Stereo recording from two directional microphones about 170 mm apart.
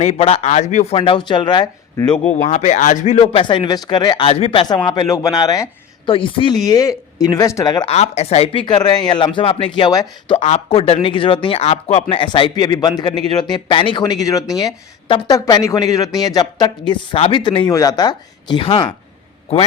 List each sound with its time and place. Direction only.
0.0 s speech: 35° left (ahead or behind)
2.0 s a man's voice: 5° left (ahead or behind)
2.3 s speech: 40° left (ahead or behind)
3.4 s speech: 25° left (ahead or behind)
7.9 s speech: 40° left (ahead or behind)
8.6 s speech: 25° left (ahead or behind)
10.3 s speech: 40° left (ahead or behind)